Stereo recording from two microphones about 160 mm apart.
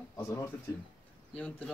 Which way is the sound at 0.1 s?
20° left (ahead or behind).